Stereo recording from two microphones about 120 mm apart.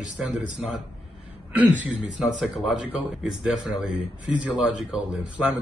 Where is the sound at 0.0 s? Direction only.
5° right (ahead or behind).